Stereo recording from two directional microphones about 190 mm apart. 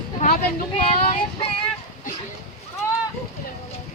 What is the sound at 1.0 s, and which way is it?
Child singing, 35° left (ahead or behind).